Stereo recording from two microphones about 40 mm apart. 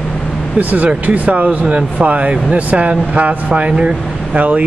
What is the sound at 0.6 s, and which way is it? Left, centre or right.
Speech, right.